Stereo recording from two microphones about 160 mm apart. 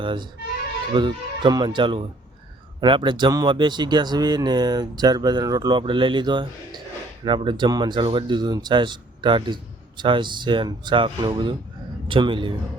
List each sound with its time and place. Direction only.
0.0 s a man's voice: 30° right (ahead or behind)